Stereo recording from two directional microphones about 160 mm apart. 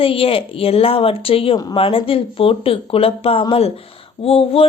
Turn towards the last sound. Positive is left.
turn(degrees=35)  # may be behind; listen again after turning